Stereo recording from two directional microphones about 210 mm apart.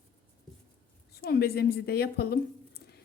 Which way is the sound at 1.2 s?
45° left (ahead or behind).